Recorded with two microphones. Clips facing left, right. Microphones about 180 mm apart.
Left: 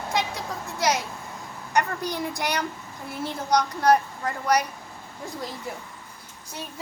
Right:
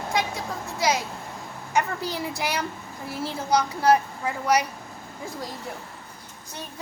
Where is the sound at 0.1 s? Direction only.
Centre (ahead or behind).